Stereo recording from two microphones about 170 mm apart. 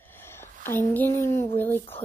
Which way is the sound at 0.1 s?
15° left (ahead or behind).